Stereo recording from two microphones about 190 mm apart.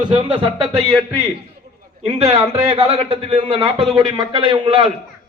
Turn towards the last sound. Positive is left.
turn(degrees=-30)  # may be behind; listen again after turning